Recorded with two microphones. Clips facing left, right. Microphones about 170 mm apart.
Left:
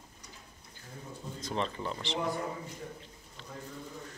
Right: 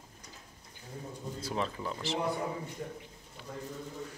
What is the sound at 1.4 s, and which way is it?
Speech, 5° right (ahead or behind).